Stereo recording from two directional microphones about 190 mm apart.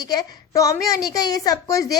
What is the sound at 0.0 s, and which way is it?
A woman's voice, 20° left (ahead or behind).